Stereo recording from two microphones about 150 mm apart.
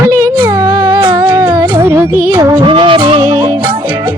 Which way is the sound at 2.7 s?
35° right (ahead or behind).